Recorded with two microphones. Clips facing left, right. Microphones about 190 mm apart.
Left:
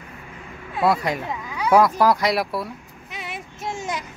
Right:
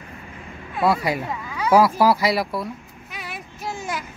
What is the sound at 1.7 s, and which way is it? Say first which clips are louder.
Speech: even; 10° right (ahead or behind).